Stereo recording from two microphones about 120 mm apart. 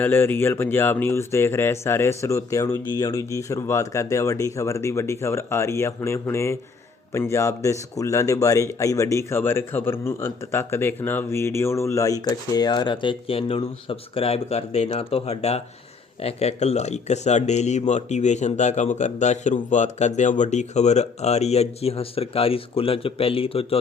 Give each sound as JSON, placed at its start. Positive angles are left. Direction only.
{"t": 0.0, "sound": "speech", "side_deg": 15}